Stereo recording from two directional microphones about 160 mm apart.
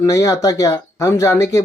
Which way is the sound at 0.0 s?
20° left (ahead or behind).